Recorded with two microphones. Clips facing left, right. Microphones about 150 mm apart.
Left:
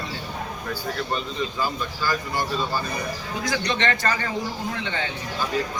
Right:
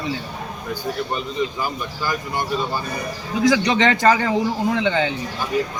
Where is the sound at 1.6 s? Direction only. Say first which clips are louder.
Right 1 dB; 15° right (ahead or behind).